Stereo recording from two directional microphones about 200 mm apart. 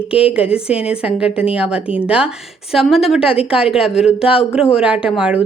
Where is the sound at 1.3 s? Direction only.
30° left (ahead or behind).